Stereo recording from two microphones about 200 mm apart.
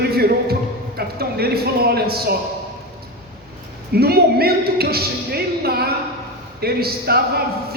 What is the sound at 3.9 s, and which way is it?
Speech, 50° right (ahead or behind).